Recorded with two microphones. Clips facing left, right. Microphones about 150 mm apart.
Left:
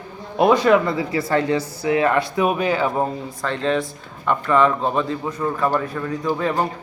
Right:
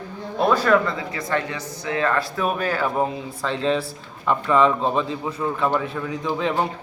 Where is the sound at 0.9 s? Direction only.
30° left (ahead or behind).